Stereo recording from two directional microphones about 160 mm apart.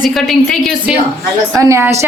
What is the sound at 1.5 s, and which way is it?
Speech, 15° right (ahead or behind).